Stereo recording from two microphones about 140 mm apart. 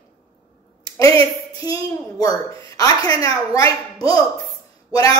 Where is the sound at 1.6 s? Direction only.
25° left (ahead or behind).